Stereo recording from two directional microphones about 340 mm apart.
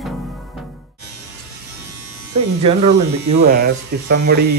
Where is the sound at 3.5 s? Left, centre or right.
Right.